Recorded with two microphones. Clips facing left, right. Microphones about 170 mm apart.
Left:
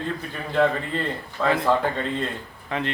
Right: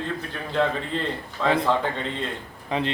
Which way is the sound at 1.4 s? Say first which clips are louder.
Even; 5° left (ahead or behind).